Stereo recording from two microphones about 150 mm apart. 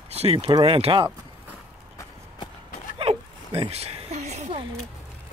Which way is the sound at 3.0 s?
40° right (ahead or behind).